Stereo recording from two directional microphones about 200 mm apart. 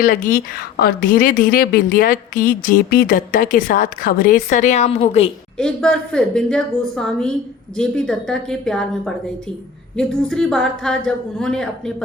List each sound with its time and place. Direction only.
0.0 s a woman's voice: 40° left (ahead or behind)
5.5 s a woman's voice: 5° left (ahead or behind)